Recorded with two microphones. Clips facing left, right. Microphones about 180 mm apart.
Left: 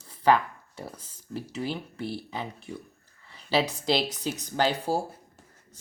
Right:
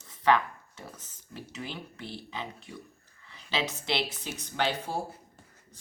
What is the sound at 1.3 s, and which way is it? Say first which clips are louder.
Speech: left 7 dB; 35° left (ahead or behind).